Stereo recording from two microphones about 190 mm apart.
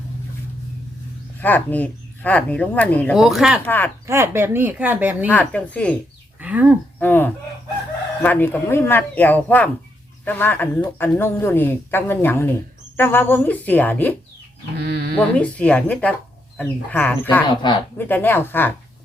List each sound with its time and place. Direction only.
1.4 s a woman's voice: 10° left (ahead or behind)
3.7 s a woman's voice: 10° left (ahead or behind)
4.0 s speech: 15° right (ahead or behind)
5.3 s a woman's voice: 10° left (ahead or behind)
6.4 s a sound: 5° right (ahead or behind)
7.0 s a woman's voice: 10° left (ahead or behind)
14.8 s speech: 60° right (ahead or behind)
15.2 s a woman's voice: 5° left (ahead or behind)
17.5 s speech: 25° left (ahead or behind)
17.9 s a woman's voice: 10° left (ahead or behind)